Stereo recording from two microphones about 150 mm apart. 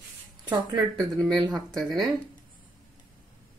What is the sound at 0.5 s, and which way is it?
Speech, 30° right (ahead or behind).